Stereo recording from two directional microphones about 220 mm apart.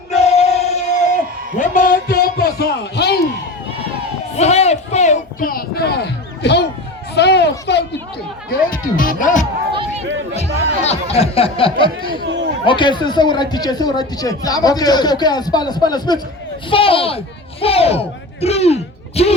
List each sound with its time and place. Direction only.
0.1 s music: 30° left (ahead or behind)
1.5 s a man's voice: 35° left (ahead or behind)
4.4 s a man's voice: 30° left (ahead or behind); by 7.9 s 50° left (ahead or behind)
8.4 s speech: 40° left (ahead or behind); by 11.9 s 25° left (ahead or behind)
12.2 s a sound: 55° right (ahead or behind)
12.6 s speech: 20° left (ahead or behind)